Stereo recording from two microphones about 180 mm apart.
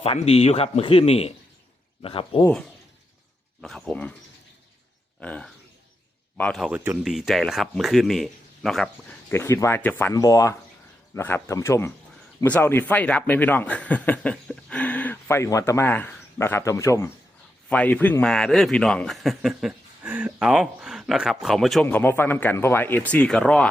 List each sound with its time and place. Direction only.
0.0 s speech: 35° left (ahead or behind)
3.6 s speech: 5° left (ahead or behind)
5.2 s speech: 5° left (ahead or behind)
6.7 s speech: 10° right (ahead or behind)
9.3 s speech: 15° left (ahead or behind)